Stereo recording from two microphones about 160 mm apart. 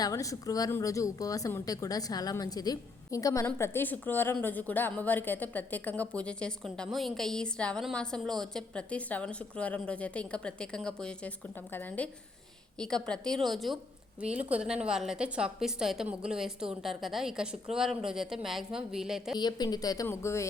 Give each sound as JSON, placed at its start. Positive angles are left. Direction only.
{"t": 0.0, "sound": "a woman's voice", "side_deg": 20}
{"t": 19.4, "sound": "speech", "side_deg": 25}